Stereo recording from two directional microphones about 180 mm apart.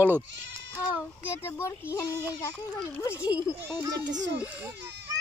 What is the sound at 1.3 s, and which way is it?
Speech, 15° left (ahead or behind).